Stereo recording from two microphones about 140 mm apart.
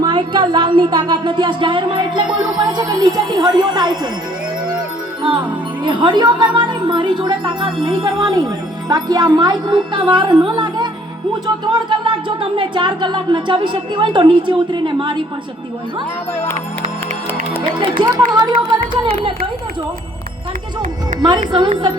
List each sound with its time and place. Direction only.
0.0 s speech: 35° right (ahead or behind)
5.2 s speech: 35° right (ahead or behind)
17.6 s speech: 35° right (ahead or behind)
21.2 s speech: 30° right (ahead or behind)